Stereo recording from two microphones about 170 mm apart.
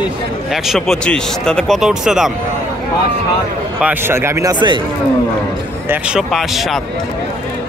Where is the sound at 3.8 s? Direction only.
10° right (ahead or behind).